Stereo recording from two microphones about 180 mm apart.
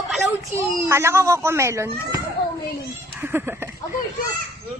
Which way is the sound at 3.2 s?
10° right (ahead or behind).